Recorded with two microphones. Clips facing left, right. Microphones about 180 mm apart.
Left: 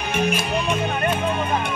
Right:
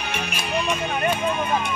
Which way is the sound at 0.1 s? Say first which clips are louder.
Left 12 dB; 50° left (ahead or behind).